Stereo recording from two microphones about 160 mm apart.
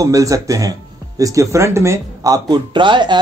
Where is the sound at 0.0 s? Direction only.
20° right (ahead or behind).